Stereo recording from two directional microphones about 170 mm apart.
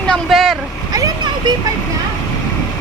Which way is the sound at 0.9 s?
20° right (ahead or behind).